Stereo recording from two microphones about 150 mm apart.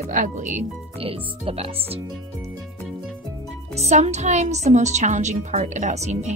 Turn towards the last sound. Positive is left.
turn(degrees=-50)  # may be behind; listen again after turning